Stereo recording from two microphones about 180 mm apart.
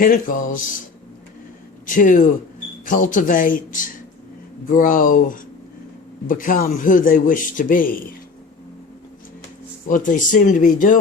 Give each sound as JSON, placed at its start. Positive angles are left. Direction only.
{"t": 0.0, "sound": "a man's voice", "side_deg": 50}
{"t": 1.9, "sound": "a man's voice", "side_deg": 45}
{"t": 9.9, "sound": "a man's voice", "side_deg": 45}